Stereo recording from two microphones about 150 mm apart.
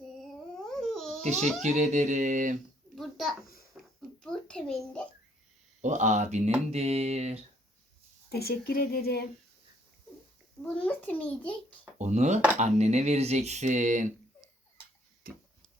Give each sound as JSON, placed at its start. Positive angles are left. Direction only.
{"t": 0.2, "sound": "a sound", "side_deg": 5}
{"t": 1.2, "sound": "a child's voice", "side_deg": -50}
{"t": 2.9, "sound": "a sound", "side_deg": 0}
{"t": 4.2, "sound": "a child's voice", "side_deg": 5}
{"t": 5.8, "sound": "speech", "side_deg": -55}
{"t": 8.3, "sound": "speech", "side_deg": 90}
{"t": 10.7, "sound": "a child's voice", "side_deg": 10}
{"t": 11.9, "sound": "speech", "side_deg": -50}
{"t": 15.3, "sound": "a sound", "side_deg": -75}